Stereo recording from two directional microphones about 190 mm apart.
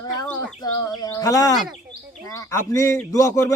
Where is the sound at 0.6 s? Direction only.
20° left (ahead or behind).